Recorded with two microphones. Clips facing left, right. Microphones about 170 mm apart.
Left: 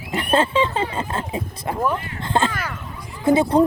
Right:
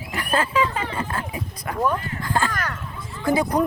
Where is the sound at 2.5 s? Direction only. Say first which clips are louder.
Even; 10° left (ahead or behind).